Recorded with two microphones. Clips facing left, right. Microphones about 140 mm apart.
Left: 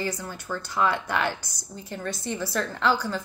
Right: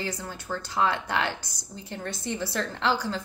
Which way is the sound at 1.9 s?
20° right (ahead or behind).